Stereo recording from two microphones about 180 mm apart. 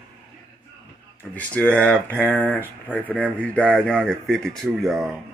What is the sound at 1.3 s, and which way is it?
Speech, 5° left (ahead or behind).